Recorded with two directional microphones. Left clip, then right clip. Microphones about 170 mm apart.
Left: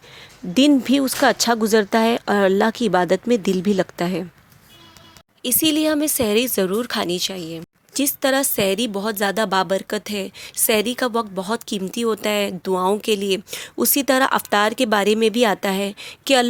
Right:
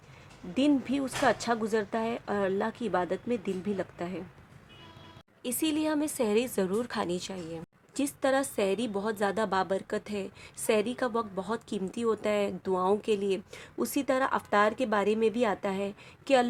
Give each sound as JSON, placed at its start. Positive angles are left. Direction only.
{"t": 0.5, "sound": "speech", "side_deg": 50}
{"t": 5.4, "sound": "speech", "side_deg": 30}